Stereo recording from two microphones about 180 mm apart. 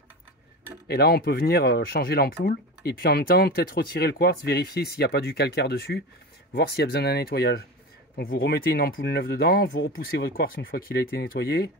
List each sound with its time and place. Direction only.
0.8 s speech: 65° left (ahead or behind)